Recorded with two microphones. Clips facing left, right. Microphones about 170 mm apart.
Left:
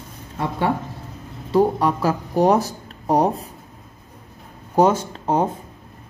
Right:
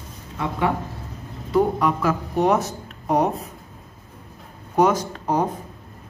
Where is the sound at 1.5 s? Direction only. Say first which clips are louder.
Left 2 dB; 35° left (ahead or behind).